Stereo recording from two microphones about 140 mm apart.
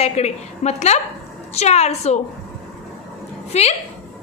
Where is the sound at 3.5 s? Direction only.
50° left (ahead or behind).